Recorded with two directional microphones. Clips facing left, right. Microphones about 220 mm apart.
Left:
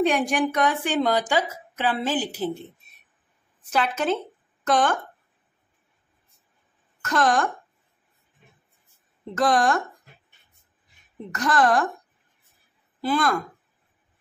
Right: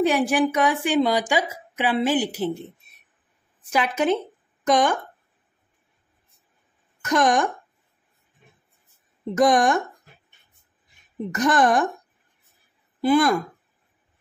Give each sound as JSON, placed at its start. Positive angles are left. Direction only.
{"t": 0.0, "sound": "speech", "side_deg": -5}
{"t": 3.7, "sound": "speech", "side_deg": -15}
{"t": 7.0, "sound": "speech", "side_deg": -15}
{"t": 9.2, "sound": "speech", "side_deg": -15}
{"t": 11.3, "sound": "speech", "side_deg": -20}
{"t": 13.0, "sound": "speech", "side_deg": -15}